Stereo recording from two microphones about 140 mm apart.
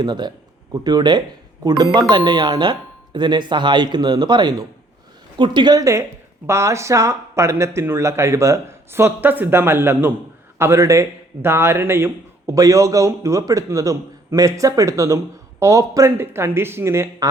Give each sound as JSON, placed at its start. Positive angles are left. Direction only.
{"t": 0.0, "sound": "a man's voice", "side_deg": -30}